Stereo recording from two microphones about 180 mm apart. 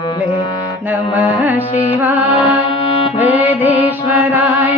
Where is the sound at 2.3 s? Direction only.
30° left (ahead or behind).